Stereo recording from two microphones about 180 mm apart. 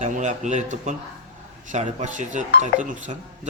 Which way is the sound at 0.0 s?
40° right (ahead or behind).